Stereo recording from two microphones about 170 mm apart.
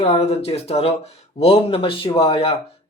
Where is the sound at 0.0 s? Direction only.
35° left (ahead or behind).